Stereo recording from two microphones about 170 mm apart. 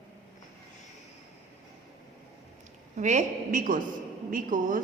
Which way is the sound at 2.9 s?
45° right (ahead or behind).